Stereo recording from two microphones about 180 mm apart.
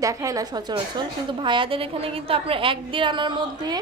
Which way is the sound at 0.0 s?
20° right (ahead or behind).